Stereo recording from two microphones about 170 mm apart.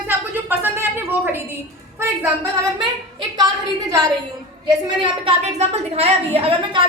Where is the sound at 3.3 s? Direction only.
25° right (ahead or behind).